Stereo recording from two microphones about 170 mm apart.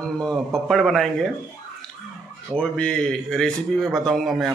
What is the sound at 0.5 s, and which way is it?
Speech, centre (ahead or behind).